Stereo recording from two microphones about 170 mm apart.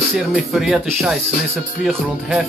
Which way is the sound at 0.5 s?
Centre (ahead or behind).